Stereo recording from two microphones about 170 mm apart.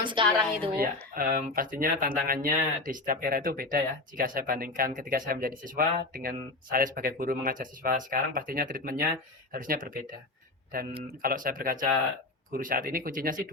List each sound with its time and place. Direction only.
0.0 s a woman's voice: 30° right (ahead or behind)
0.8 s speech: 60° right (ahead or behind)